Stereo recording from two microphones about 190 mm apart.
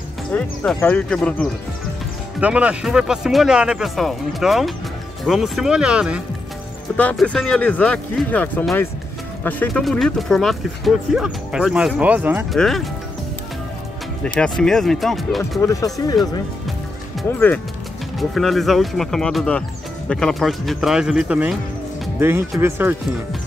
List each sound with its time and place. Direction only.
0.3 s speech: 10° left (ahead or behind)
2.4 s speech: 5° right (ahead or behind)
7.0 s speech: 5° left (ahead or behind); by 12.4 s 10° right (ahead or behind)
12.5 s speech: centre (ahead or behind)
14.2 s speech: 5° left (ahead or behind)
15.6 s speech: 20° left (ahead or behind)
17.2 s speech: 10° left (ahead or behind)
22.6 s speech: 10° right (ahead or behind)